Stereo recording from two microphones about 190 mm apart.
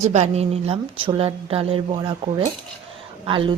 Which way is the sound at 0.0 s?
35° right (ahead or behind).